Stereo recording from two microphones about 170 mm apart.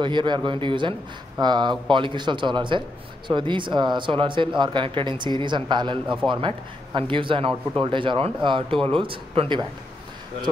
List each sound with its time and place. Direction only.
0.0 s speech: 30° right (ahead or behind)